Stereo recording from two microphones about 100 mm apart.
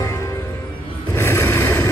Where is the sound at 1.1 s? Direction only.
25° left (ahead or behind).